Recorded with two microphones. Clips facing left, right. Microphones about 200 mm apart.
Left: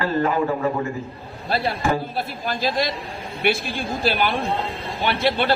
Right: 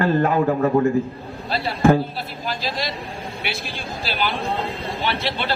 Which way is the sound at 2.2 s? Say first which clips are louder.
Left 3 dB; 50° left (ahead or behind).